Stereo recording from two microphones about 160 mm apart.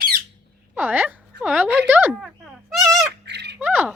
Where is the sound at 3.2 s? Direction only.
90° right.